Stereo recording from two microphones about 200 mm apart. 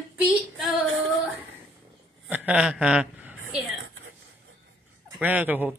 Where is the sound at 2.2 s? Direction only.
5° right (ahead or behind).